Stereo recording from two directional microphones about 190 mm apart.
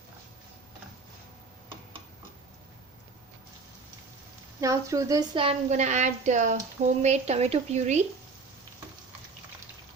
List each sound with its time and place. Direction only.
4.6 s a woman's voice: 15° right (ahead or behind); by 8.0 s 35° right (ahead or behind)